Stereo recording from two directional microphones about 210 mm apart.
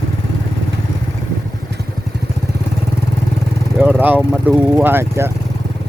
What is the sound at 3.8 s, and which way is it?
Speech, 10° right (ahead or behind).